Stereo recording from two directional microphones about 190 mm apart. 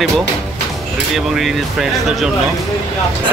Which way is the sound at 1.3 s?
Centre (ahead or behind).